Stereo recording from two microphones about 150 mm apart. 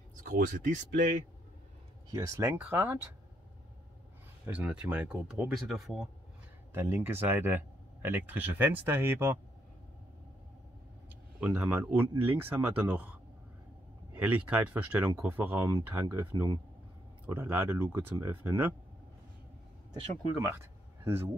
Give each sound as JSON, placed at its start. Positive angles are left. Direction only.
{"t": 0.2, "sound": "speech", "side_deg": -65}
{"t": 2.0, "sound": "speech", "side_deg": -25}
{"t": 4.5, "sound": "speech", "side_deg": -10}
{"t": 6.7, "sound": "speech", "side_deg": -15}
{"t": 11.3, "sound": "speech", "side_deg": -10}
{"t": 14.1, "sound": "speech", "side_deg": -10}
{"t": 20.3, "sound": "speech", "side_deg": -20}